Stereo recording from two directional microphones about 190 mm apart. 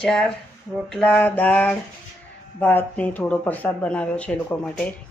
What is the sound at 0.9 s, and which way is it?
Speech, 5° left (ahead or behind).